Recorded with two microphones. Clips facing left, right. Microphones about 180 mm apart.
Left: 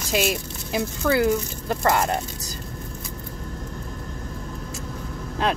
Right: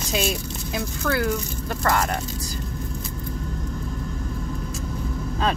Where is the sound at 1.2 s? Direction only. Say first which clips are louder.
Left 4 dB; 20° left (ahead or behind).